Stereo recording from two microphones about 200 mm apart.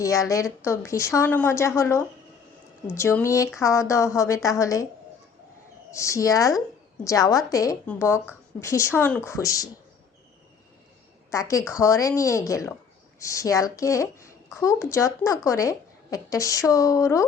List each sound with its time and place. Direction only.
0.0 s a woman's voice: 15° left (ahead or behind)
5.9 s a woman's voice: 15° left (ahead or behind)
11.3 s a woman's voice: 15° left (ahead or behind)